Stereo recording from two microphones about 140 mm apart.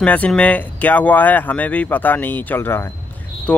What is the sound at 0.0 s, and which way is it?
Speech, 10° left (ahead or behind).